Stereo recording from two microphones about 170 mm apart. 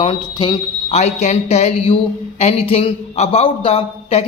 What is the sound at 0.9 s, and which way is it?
A man's voice, 40° left (ahead or behind).